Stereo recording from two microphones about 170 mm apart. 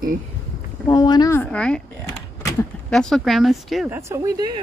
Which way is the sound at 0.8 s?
20° left (ahead or behind).